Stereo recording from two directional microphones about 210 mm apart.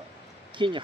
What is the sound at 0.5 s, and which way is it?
Speech, 25° right (ahead or behind).